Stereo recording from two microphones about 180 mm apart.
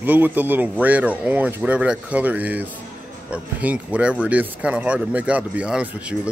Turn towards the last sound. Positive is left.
turn(degrees=-5)  # may be behind; listen again after turning